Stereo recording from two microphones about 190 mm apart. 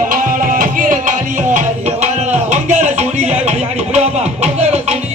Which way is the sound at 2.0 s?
40° right (ahead or behind).